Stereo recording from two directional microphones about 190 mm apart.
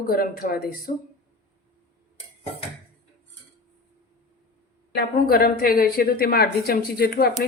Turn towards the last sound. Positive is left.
turn(degrees=55)  # may be behind; listen again after turning